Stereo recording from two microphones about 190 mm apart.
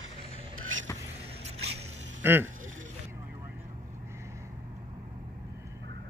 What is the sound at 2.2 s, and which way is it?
Speech, 10° right (ahead or behind).